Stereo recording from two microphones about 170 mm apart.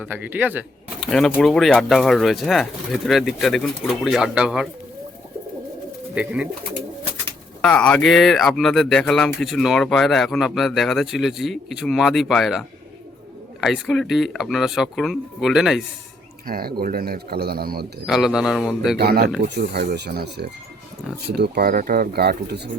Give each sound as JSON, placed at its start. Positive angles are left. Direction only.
{"t": 0.0, "sound": "speech", "side_deg": -10}
{"t": 1.0, "sound": "speech", "side_deg": 5}
{"t": 6.1, "sound": "speech", "side_deg": -5}
{"t": 7.6, "sound": "speech", "side_deg": 5}
{"t": 16.5, "sound": "speech", "side_deg": -60}
{"t": 18.0, "sound": "speech", "side_deg": -5}
{"t": 18.9, "sound": "speech", "side_deg": -65}